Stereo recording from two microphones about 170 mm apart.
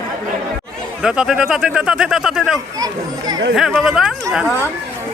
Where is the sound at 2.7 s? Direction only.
25° right (ahead or behind).